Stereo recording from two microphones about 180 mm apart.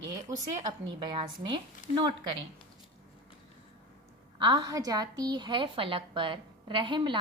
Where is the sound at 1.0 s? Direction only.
25° right (ahead or behind).